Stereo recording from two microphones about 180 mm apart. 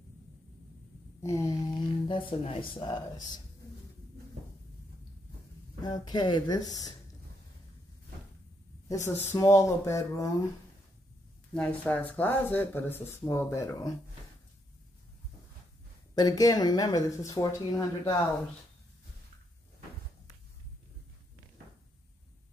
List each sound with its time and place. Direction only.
1.2 s speech: 15° left (ahead or behind)
5.8 s speech: 20° left (ahead or behind)
8.8 s speech: 20° left (ahead or behind)
11.5 s speech: 5° left (ahead or behind)
16.2 s speech: 20° left (ahead or behind)